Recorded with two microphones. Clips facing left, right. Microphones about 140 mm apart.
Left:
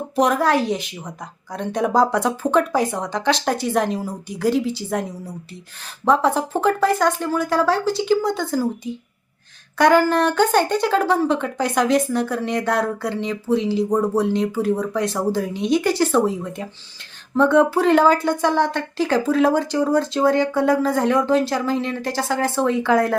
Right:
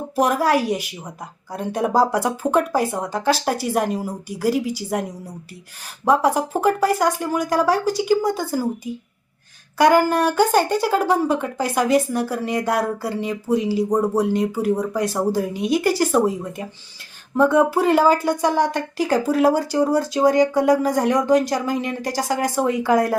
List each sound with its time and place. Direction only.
0.2 s speech: 5° right (ahead or behind)